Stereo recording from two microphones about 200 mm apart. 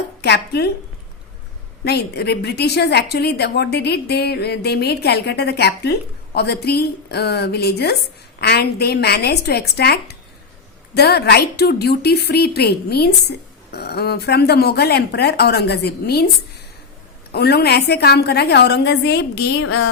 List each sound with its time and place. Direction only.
0.2 s a woman's voice: 55° left (ahead or behind)
1.8 s a woman's voice: 55° left (ahead or behind)
17.3 s a woman's voice: 55° left (ahead or behind)
19.6 s a sound: 90° left